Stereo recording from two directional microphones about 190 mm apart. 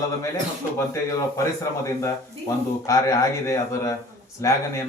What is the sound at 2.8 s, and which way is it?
A man's voice, 15° left (ahead or behind).